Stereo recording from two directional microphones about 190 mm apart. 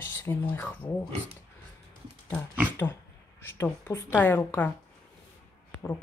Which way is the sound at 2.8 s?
10° left (ahead or behind).